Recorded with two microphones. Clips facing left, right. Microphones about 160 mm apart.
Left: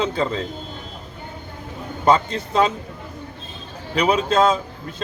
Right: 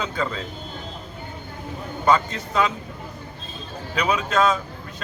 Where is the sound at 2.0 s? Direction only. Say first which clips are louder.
Left 3 dB; 30° left (ahead or behind).